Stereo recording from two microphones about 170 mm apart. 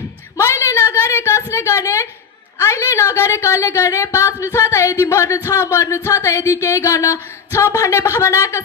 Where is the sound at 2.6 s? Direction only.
15° left (ahead or behind).